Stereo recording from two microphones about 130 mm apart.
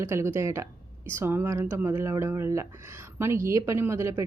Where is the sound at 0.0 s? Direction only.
20° right (ahead or behind).